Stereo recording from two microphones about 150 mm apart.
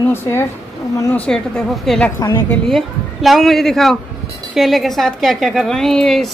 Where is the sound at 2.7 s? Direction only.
Centre (ahead or behind).